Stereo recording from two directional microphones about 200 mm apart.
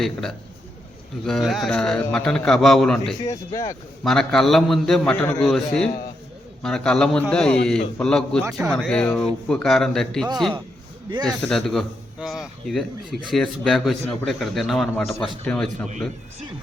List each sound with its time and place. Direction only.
0.0 s a man's voice: centre (ahead or behind)
3.2 s speech: 15° left (ahead or behind)
4.0 s a man's voice: centre (ahead or behind)
11.3 s a man's voice: 5° left (ahead or behind)